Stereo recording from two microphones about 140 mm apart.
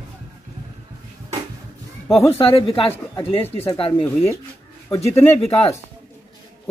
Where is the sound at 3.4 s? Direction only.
15° left (ahead or behind).